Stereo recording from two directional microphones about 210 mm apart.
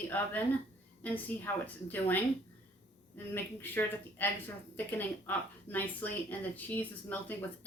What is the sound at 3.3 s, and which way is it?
Speech, 10° left (ahead or behind).